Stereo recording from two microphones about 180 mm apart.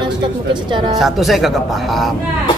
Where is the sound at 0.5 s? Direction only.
25° right (ahead or behind).